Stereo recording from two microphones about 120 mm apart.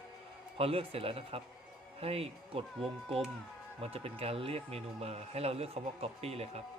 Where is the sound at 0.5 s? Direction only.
50° right (ahead or behind).